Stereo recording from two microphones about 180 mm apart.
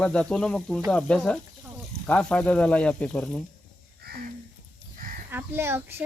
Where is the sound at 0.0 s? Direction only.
5° left (ahead or behind).